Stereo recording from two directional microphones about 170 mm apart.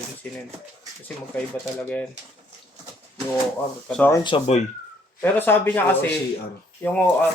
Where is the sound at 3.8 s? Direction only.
5° left (ahead or behind).